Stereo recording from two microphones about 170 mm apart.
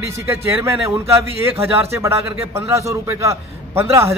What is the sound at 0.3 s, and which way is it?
A man's voice, 15° right (ahead or behind).